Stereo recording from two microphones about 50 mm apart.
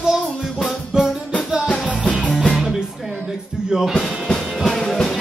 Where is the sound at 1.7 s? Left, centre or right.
Left.